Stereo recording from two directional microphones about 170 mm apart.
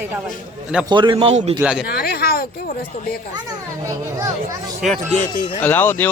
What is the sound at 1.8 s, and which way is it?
Speech, 65° left (ahead or behind).